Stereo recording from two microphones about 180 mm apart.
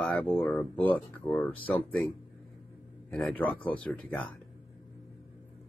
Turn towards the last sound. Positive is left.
turn(degrees=10)  # may be behind; listen again after turning